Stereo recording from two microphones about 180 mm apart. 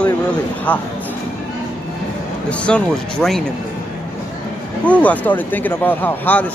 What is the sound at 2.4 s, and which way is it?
Speech, 5° left (ahead or behind).